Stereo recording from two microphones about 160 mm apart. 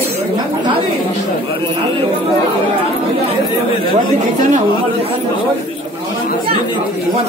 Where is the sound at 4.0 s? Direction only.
55° right (ahead or behind).